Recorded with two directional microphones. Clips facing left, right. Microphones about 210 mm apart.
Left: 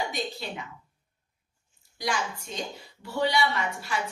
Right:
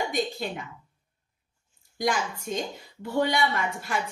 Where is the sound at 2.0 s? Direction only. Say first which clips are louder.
Right 4 dB; 50° right (ahead or behind).